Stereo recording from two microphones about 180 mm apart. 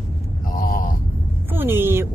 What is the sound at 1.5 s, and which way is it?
Speech, 10° right (ahead or behind).